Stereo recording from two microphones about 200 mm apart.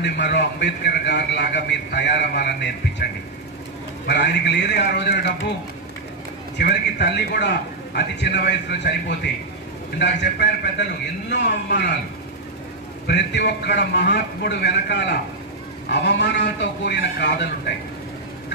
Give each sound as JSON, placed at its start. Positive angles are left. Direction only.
{"t": 0.0, "sound": "a man's voice", "side_deg": 60}
{"t": 4.1, "sound": "a man's voice", "side_deg": 60}
{"t": 6.6, "sound": "a man's voice", "side_deg": 55}
{"t": 9.9, "sound": "a man's voice", "side_deg": 60}
{"t": 13.0, "sound": "a man's voice", "side_deg": 55}